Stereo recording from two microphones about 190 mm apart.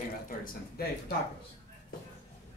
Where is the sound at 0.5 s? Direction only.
50° left (ahead or behind).